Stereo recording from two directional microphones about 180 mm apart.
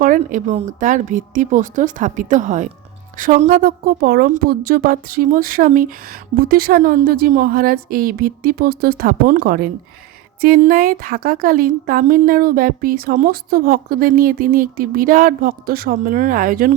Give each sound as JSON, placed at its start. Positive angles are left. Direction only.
{"t": 0.0, "sound": "a woman's voice", "side_deg": -45}